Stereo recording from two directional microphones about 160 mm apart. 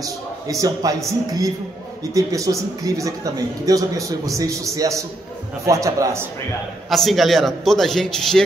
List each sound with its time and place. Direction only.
0.0 s a man's voice: 20° right (ahead or behind)
2.1 s a man's voice: 20° right (ahead or behind)
6.9 s a man's voice: centre (ahead or behind)